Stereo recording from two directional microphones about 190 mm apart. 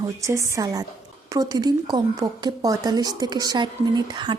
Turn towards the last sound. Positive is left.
turn(degrees=-25)  # may be behind; listen again after turning